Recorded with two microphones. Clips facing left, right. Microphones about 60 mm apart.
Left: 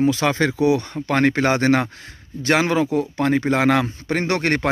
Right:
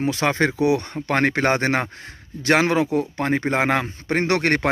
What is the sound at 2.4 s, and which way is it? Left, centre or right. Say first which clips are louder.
Speech: even; right.